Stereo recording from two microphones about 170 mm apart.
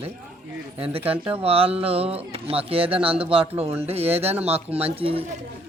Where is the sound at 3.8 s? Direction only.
35° right (ahead or behind).